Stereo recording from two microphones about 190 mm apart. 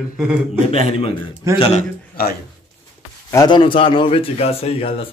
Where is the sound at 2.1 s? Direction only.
50° left (ahead or behind).